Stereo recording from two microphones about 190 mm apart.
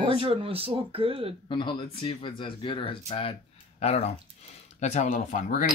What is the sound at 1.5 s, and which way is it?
Speech, 25° left (ahead or behind).